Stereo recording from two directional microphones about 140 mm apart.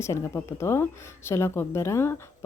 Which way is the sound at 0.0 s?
20° left (ahead or behind).